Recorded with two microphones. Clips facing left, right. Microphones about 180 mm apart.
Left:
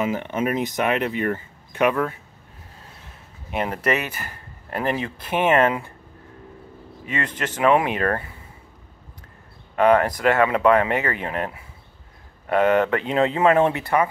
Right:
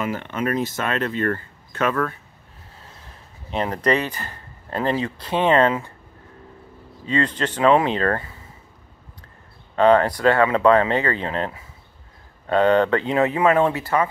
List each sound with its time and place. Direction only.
0.0 s speech: 15° left (ahead or behind)
3.4 s speech: 10° left (ahead or behind)
7.1 s speech: 15° left (ahead or behind)
9.8 s speech: 15° left (ahead or behind)
12.4 s speech: 15° left (ahead or behind)